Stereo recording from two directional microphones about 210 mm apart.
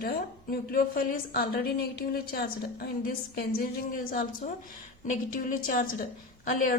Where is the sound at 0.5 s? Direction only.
45° left (ahead or behind).